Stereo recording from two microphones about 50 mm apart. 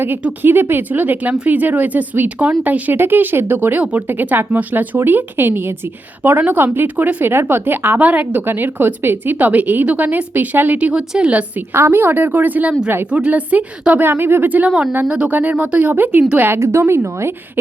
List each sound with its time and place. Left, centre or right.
0.4 s a woman's voice: right
2.9 s a woman's voice: right
6.8 s speech: right
7.3 s a woman's voice: right
7.9 s speech: right
10.9 s speech: centre
11.3 s a woman's voice: right
11.7 s a woman's voice: right
13.1 s a woman's voice: right
14.0 s a woman's voice: right
15.0 s a woman's voice: right
15.3 s speech: right
16.6 s speech: right